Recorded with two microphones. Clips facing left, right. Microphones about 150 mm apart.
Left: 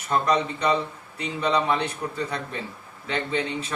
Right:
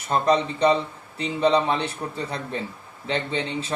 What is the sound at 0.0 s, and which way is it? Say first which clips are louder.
A man's voice: right 2 dB; 30° right (ahead or behind).